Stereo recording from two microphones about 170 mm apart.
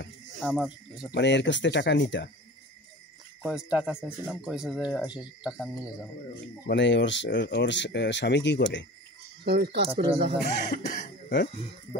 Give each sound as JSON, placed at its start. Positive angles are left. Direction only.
{"t": 0.4, "sound": "speech", "side_deg": 0}
{"t": 1.1, "sound": "speech", "side_deg": 90}
{"t": 3.4, "sound": "speech", "side_deg": -5}
{"t": 6.6, "sound": "speech", "side_deg": 90}
{"t": 9.4, "sound": "speech", "side_deg": -75}
{"t": 9.8, "sound": "speech", "side_deg": -35}
{"t": 10.4, "sound": "speech", "side_deg": 50}